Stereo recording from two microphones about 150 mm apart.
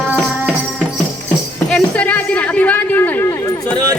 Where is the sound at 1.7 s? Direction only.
10° left (ahead or behind).